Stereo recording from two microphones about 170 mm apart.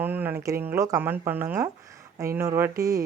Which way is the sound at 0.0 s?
10° right (ahead or behind).